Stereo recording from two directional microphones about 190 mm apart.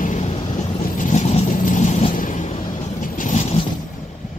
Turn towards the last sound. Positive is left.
turn(degrees=35)  # may be behind; listen again after turning